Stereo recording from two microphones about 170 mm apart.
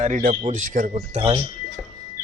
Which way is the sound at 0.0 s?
50° right (ahead or behind).